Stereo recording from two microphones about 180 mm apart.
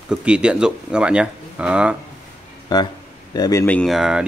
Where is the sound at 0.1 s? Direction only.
5° right (ahead or behind).